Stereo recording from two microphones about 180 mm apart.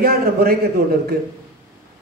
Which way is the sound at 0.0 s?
55° right (ahead or behind).